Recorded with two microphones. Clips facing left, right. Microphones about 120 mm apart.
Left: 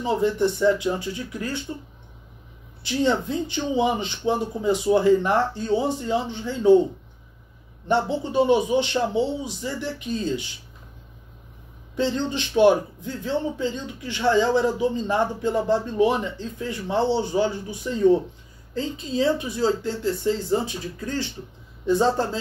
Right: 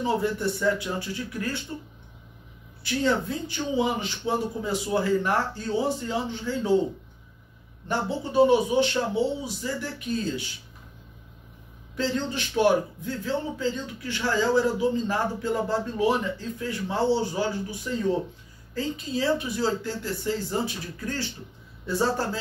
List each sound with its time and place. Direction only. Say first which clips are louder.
0.0 s a man's voice: left 4 dB; 20° left (ahead or behind)
2.8 s a man's voice: left 3 dB; 20° left (ahead or behind)
7.9 s a man's voice: left 4 dB; 20° left (ahead or behind)
12.0 s a man's voice: left 3 dB; 20° left (ahead or behind)